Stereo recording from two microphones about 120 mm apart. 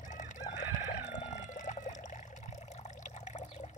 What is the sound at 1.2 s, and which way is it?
Water, 85° left.